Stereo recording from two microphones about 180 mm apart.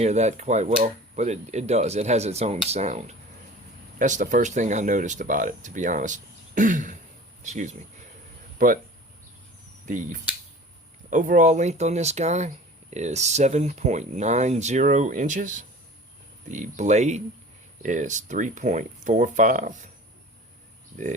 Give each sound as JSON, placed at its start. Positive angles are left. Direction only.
{"t": 0.0, "sound": "speech", "side_deg": -40}
{"t": 9.8, "sound": "speech", "side_deg": -45}